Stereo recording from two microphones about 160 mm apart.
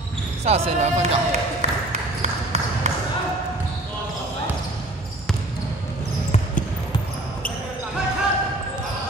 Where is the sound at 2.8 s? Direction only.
45° right (ahead or behind).